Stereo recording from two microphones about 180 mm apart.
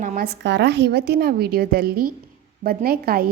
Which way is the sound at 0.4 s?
75° right (ahead or behind).